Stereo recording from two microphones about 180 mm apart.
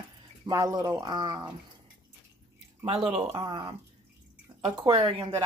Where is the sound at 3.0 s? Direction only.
30° right (ahead or behind).